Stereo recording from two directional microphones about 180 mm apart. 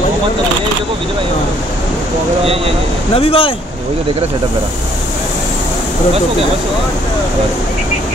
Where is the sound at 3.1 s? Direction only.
30° left (ahead or behind).